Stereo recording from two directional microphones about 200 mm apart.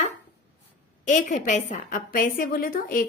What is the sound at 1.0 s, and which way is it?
A woman's voice, 40° left (ahead or behind).